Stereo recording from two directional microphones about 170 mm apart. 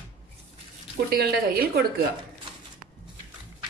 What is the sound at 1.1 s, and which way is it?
Speech, 65° right (ahead or behind).